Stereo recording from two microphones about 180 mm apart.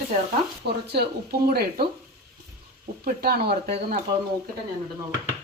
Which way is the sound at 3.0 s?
60° right (ahead or behind).